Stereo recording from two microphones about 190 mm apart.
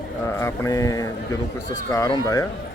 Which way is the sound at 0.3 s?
15° left (ahead or behind).